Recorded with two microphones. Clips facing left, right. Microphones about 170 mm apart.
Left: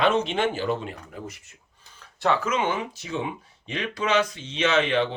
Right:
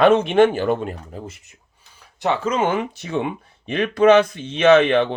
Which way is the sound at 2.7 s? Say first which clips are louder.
Right 6 dB; 60° right (ahead or behind).